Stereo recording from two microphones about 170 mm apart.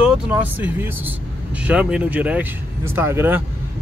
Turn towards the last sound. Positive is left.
turn(degrees=-15)  # may be behind; listen again after turning